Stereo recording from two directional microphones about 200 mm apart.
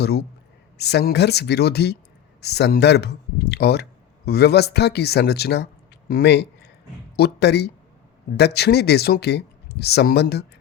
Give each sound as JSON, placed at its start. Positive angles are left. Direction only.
{"t": 0.0, "sound": "speech", "side_deg": 55}